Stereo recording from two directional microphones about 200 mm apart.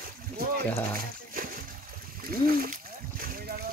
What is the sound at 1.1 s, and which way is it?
Splash, 45° right (ahead or behind).